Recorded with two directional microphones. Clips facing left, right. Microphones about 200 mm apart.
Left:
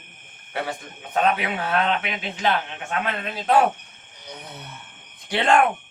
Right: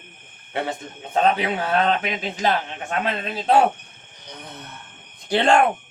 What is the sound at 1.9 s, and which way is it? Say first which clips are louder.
Speech: right 3 dB; 40° right (ahead or behind).